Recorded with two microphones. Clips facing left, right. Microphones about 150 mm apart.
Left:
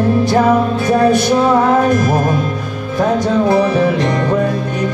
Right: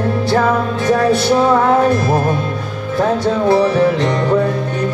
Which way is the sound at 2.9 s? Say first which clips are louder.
Left 1 dB; 10° left (ahead or behind).